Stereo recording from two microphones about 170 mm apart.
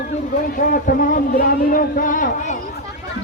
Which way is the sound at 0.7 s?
55° left (ahead or behind).